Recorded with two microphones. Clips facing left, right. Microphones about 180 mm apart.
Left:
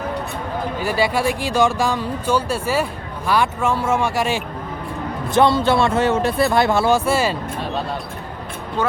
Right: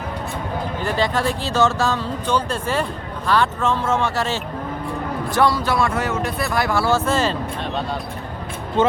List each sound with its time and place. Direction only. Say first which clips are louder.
0.8 s speech: left 2 dB; 10° left (ahead or behind)
5.3 s speech: left 4 dB; 25° left (ahead or behind)
8.8 s speech: right 4 dB; 25° right (ahead or behind)